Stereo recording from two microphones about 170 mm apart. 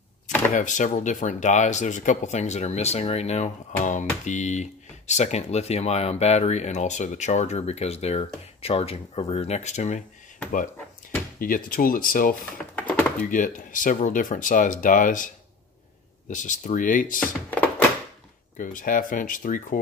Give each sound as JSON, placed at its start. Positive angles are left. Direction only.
{"t": 0.6, "sound": "speech", "side_deg": 45}
{"t": 11.3, "sound": "speech", "side_deg": 55}
{"t": 12.7, "sound": "a sound", "side_deg": 10}
{"t": 13.3, "sound": "speech", "side_deg": 50}
{"t": 16.3, "sound": "speech", "side_deg": 50}
{"t": 17.2, "sound": "music", "side_deg": 10}
{"t": 18.6, "sound": "speech", "side_deg": 50}